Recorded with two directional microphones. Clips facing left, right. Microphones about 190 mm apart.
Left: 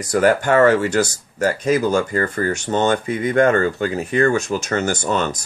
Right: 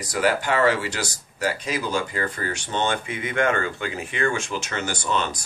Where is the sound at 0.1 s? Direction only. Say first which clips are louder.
Left 7 dB; 50° left (ahead or behind).